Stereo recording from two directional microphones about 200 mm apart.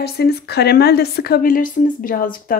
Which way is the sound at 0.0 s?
55° left (ahead or behind).